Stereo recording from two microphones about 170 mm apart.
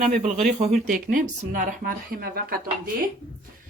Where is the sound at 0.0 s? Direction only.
50° right (ahead or behind).